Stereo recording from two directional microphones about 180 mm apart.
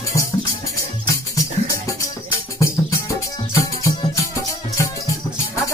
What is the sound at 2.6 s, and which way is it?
Music, 15° left (ahead or behind).